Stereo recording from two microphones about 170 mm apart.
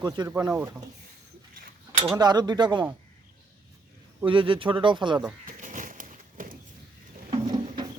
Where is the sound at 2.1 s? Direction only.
25° right (ahead or behind).